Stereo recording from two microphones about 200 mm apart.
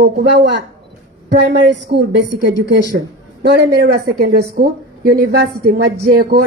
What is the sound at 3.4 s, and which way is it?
A woman's voice, 50° right (ahead or behind).